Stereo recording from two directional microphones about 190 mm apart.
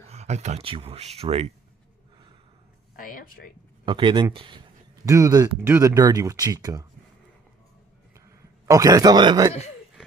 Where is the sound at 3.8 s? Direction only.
25° right (ahead or behind).